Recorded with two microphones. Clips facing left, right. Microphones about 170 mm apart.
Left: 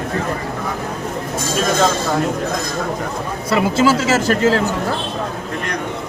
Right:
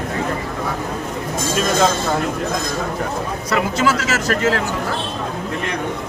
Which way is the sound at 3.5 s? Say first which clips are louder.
Left 4 dB; 30° left (ahead or behind).